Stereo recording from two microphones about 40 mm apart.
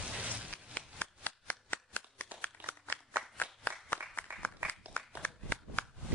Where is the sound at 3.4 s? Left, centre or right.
Left.